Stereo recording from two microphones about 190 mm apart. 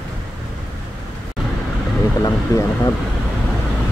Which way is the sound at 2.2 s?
15° left (ahead or behind).